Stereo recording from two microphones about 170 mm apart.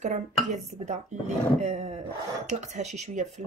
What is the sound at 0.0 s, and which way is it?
Speech, 45° right (ahead or behind).